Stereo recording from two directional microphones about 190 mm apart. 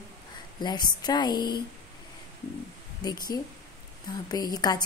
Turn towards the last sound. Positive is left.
turn(degrees=20)  # may be behind; listen again after turning